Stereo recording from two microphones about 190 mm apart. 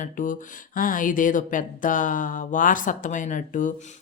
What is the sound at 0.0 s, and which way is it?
Speech, 45° left (ahead or behind).